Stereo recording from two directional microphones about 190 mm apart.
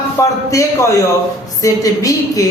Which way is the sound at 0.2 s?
15° left (ahead or behind).